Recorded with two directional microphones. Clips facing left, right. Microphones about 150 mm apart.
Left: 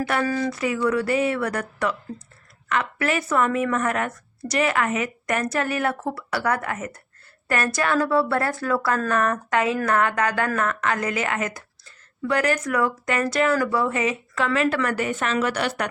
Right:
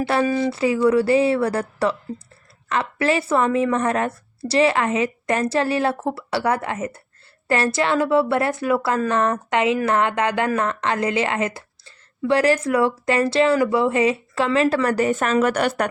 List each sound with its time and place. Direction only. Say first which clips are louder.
0.0 s a woman's voice: right 4 dB; 30° right (ahead or behind); by 15.9 s 45° right (ahead or behind)